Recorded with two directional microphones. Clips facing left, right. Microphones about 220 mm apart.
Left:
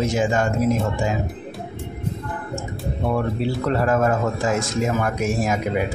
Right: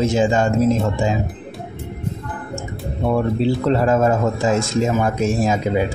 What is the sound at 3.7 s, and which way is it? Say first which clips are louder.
Speech: right 2 dB; 25° right (ahead or behind).